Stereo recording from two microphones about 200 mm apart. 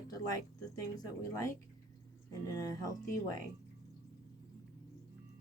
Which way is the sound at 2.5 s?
15° left (ahead or behind).